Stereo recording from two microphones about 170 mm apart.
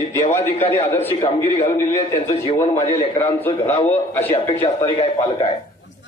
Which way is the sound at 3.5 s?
35° left (ahead or behind).